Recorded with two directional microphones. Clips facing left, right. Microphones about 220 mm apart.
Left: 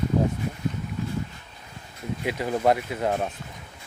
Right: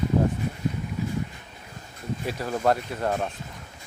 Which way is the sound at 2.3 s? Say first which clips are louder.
Left 2 dB; 15° left (ahead or behind).